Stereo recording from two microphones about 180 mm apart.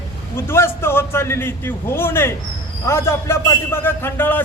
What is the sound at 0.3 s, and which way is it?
A man's voice, 15° left (ahead or behind).